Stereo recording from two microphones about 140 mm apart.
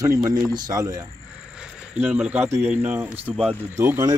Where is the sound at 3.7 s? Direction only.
20° right (ahead or behind).